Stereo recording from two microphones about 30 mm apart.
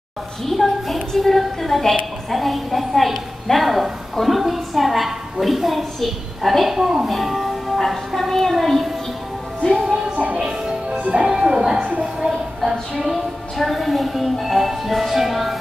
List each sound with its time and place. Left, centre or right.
0.5 s a woman's voice: centre
3.6 s a woman's voice: centre
6.7 s speech: centre
7.1 s music: centre
8.2 s a child's voice: centre
9.6 s speech: centre
10.1 s music: right
10.9 s music: right
12.9 s a woman's voice: centre